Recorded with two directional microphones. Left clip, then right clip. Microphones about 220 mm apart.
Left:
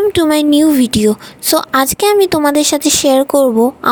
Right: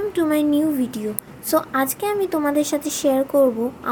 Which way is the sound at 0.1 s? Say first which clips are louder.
Left 8 dB; 40° left (ahead or behind).